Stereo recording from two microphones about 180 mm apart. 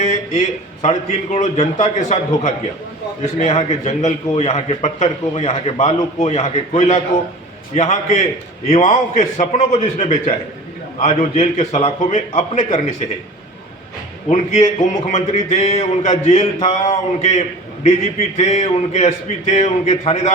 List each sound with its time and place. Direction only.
0.0 s a man's voice: 40° left (ahead or behind)
15.0 s a man's voice: 35° left (ahead or behind)